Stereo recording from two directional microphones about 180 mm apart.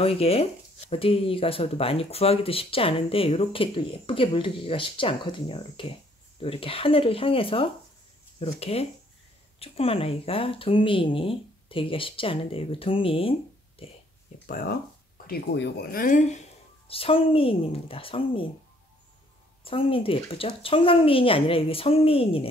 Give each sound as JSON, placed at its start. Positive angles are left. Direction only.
{"t": 0.0, "sound": "speech", "side_deg": 35}
{"t": 14.4, "sound": "speech", "side_deg": 50}
{"t": 15.2, "sound": "speech", "side_deg": 65}
{"t": 16.8, "sound": "speech", "side_deg": 30}
{"t": 19.6, "sound": "speech", "side_deg": 30}